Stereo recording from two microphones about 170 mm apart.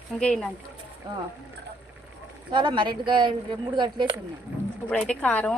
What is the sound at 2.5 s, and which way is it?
Speech, 25° right (ahead or behind).